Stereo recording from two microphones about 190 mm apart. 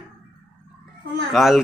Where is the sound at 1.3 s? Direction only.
Centre (ahead or behind).